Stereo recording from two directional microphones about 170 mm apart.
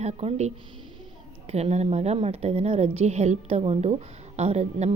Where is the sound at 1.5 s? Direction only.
40° right (ahead or behind).